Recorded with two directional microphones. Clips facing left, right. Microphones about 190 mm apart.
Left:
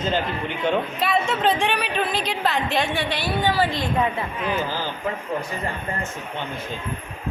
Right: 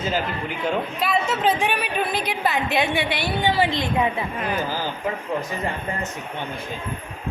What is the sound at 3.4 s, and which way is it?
Speech, 20° right (ahead or behind).